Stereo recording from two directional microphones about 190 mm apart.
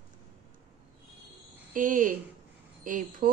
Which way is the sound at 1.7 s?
45° right (ahead or behind).